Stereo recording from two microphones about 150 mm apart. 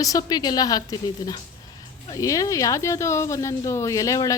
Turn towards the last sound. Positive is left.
turn(degrees=20)  # may be behind; listen again after turning